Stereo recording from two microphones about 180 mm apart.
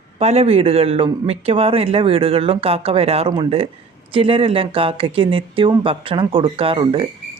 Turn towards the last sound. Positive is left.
turn(degrees=-25)  # may be behind; listen again after turning